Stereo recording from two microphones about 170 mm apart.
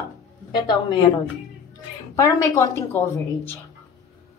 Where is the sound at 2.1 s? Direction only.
15° left (ahead or behind).